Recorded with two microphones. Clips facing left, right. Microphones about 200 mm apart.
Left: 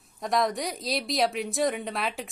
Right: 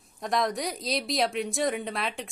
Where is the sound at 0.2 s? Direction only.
Centre (ahead or behind).